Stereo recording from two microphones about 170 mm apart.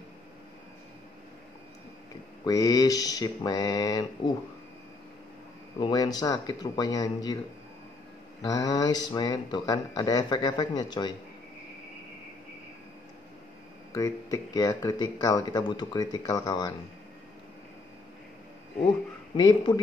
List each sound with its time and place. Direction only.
2.4 s speech: 20° left (ahead or behind)
5.8 s speech: 25° left (ahead or behind)
8.4 s speech: 20° left (ahead or behind)
13.9 s speech: 20° left (ahead or behind)
19.3 s speech: 25° left (ahead or behind)